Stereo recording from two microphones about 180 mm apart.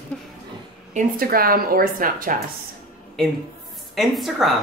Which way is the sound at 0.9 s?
55° right (ahead or behind).